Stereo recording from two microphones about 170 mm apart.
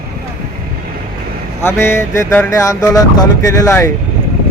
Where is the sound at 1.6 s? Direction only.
15° left (ahead or behind).